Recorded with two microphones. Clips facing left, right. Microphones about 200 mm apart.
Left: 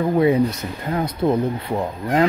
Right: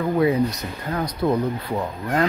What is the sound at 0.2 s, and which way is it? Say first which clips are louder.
Speech: left 2 dB; 30° left (ahead or behind).